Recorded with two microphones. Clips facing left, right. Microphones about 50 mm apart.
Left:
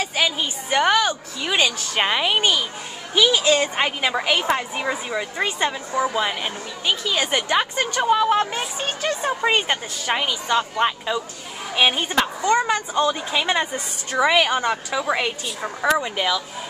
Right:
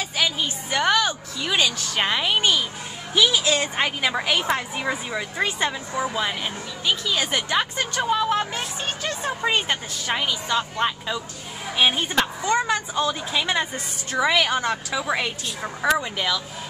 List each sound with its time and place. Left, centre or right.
0.0 s a woman's voice: centre
13.1 s a woman's voice: centre